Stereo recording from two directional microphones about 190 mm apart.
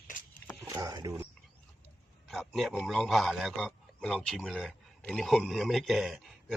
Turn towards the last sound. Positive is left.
turn(degrees=0)  # may be behind; listen again after turning